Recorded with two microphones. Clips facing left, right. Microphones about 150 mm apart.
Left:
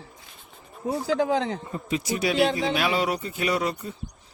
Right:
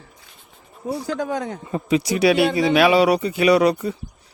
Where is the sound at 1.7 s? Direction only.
80° right.